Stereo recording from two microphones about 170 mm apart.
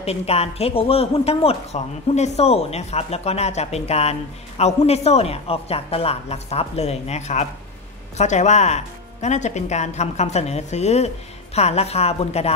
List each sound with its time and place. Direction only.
0.0 s speech: 35° left (ahead or behind)